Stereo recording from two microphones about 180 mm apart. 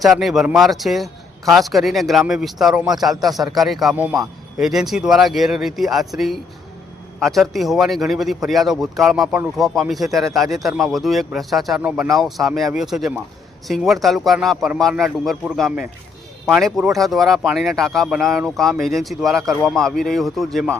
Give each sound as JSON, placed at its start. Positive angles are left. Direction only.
{"t": 0.0, "sound": "speech", "side_deg": 0}
{"t": 4.1, "sound": "a man's voice", "side_deg": -20}
{"t": 4.6, "sound": "speech", "side_deg": 0}